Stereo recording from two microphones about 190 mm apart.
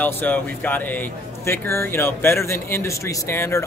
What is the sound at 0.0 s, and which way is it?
A man's voice, 10° left (ahead or behind).